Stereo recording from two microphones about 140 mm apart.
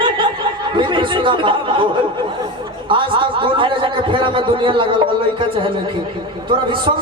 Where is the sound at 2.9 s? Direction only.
35° right (ahead or behind).